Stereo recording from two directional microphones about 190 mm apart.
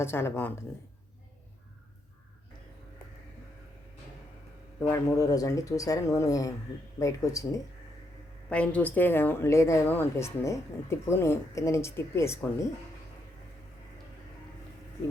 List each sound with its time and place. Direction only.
0.0 s a woman's voice: 10° left (ahead or behind)
4.8 s a woman's voice: 15° left (ahead or behind)
8.4 s a woman's voice: 5° left (ahead or behind)